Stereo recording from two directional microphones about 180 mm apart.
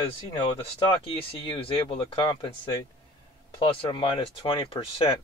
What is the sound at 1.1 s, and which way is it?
Speech, 30° left (ahead or behind).